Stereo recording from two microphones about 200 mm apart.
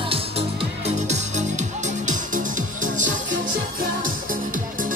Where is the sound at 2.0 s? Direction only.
40° right (ahead or behind).